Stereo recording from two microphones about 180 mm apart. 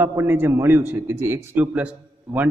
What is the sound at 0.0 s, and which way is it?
A man's voice, 10° right (ahead or behind).